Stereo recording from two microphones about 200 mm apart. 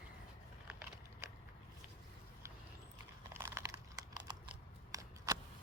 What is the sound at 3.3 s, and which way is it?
Crumpling, 15° right (ahead or behind).